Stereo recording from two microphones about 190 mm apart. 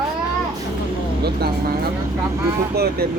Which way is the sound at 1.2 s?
55° right (ahead or behind).